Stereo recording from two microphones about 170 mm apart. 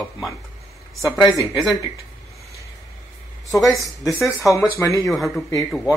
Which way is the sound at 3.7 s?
20° left (ahead or behind).